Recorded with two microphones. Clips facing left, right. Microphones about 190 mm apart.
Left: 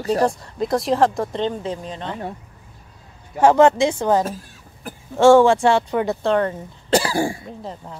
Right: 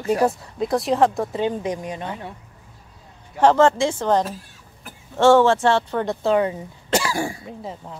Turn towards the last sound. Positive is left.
turn(degrees=0)  # may be behind; listen again after turning